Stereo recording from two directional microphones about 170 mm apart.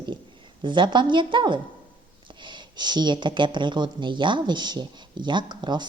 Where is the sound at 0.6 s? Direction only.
25° right (ahead or behind).